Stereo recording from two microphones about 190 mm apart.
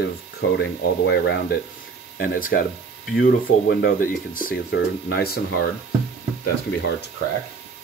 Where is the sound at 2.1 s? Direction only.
45° left (ahead or behind).